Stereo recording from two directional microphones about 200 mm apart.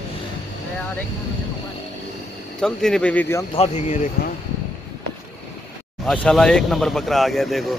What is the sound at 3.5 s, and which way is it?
Speech, 35° left (ahead or behind).